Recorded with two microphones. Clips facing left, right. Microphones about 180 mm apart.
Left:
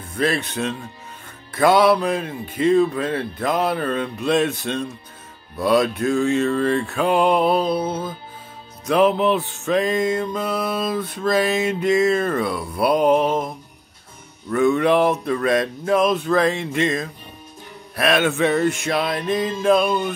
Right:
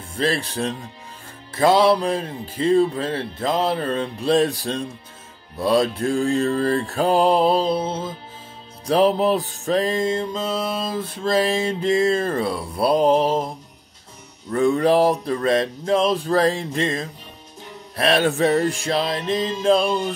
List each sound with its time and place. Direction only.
0.0 s speech: 30° right (ahead or behind)
1.5 s music: 30° right (ahead or behind)
5.6 s a sound: 30° right (ahead or behind)
8.8 s music: 35° right (ahead or behind)
14.5 s a sound: 30° right (ahead or behind)
17.9 s music: 30° right (ahead or behind)